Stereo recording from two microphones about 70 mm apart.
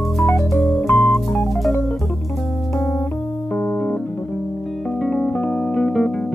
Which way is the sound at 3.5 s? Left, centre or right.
Left.